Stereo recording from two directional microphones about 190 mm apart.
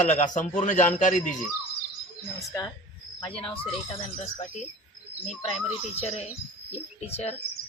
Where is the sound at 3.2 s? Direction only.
30° left (ahead or behind).